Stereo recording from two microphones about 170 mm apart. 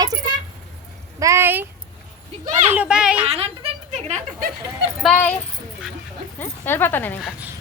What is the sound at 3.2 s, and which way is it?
Speech, 35° right (ahead or behind).